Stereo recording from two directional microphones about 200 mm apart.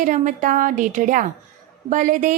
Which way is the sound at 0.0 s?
40° right (ahead or behind).